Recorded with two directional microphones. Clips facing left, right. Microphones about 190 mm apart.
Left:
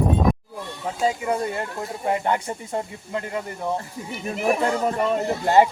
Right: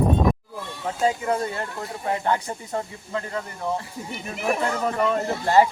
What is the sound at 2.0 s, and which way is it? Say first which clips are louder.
Speech: left 1 dB; 20° left (ahead or behind).